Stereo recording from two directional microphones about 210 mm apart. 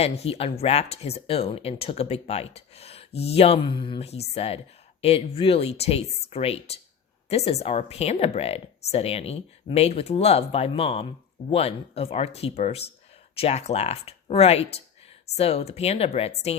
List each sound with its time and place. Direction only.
0.0 s speech: 30° left (ahead or behind)